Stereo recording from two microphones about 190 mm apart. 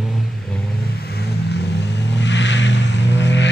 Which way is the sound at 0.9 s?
55° left (ahead or behind).